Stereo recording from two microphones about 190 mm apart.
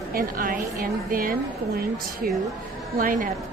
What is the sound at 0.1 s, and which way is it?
A woman's voice, 50° right (ahead or behind).